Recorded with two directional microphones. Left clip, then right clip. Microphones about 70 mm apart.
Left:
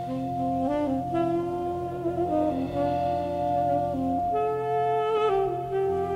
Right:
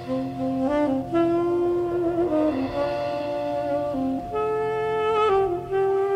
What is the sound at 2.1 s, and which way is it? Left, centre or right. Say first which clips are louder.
Music: even; left.